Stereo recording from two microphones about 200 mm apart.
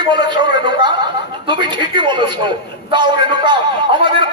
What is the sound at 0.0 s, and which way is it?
Speech, 20° right (ahead or behind).